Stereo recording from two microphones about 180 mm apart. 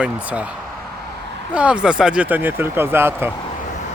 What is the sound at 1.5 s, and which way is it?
Speech, 5° right (ahead or behind).